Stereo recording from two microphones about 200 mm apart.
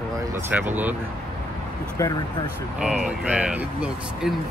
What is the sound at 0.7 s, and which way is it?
Speech, 10° right (ahead or behind).